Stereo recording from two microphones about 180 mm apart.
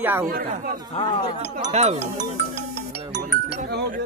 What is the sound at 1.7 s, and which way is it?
Speech, 40° right (ahead or behind).